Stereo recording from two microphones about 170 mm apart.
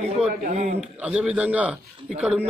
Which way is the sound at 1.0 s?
5° right (ahead or behind).